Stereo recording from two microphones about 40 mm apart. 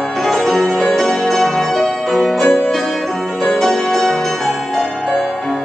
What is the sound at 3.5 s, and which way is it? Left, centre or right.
Music, centre.